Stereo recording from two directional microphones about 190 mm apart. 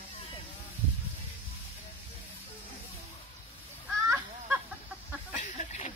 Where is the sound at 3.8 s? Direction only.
10° right (ahead or behind).